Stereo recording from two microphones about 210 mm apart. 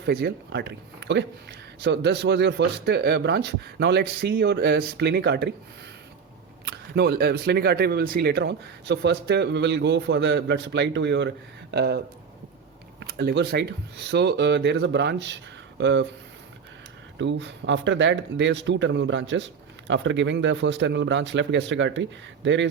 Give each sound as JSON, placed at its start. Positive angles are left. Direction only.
{"t": 0.0, "sound": "speech", "side_deg": -50}
{"t": 6.7, "sound": "speech", "side_deg": -55}
{"t": 17.2, "sound": "speech", "side_deg": -60}